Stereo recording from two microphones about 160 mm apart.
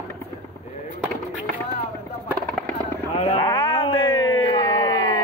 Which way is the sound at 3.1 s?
40° left (ahead or behind).